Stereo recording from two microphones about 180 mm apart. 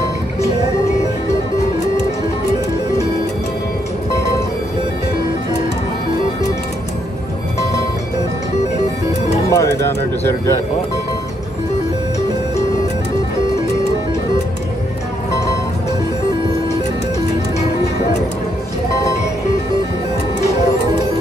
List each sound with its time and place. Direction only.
9.5 s bird: 15° left (ahead or behind)